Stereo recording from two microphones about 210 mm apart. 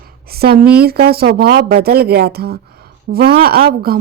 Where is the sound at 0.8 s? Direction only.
50° right (ahead or behind).